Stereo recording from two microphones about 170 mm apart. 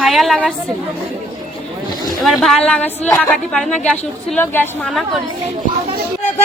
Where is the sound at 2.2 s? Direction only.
Centre (ahead or behind).